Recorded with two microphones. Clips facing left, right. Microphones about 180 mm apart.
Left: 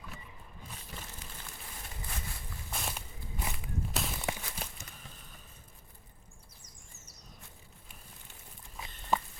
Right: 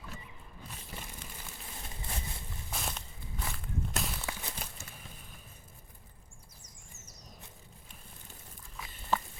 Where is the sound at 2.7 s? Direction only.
Centre (ahead or behind).